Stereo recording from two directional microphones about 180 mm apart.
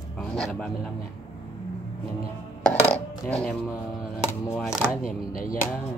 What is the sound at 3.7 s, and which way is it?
Speech, 15° left (ahead or behind).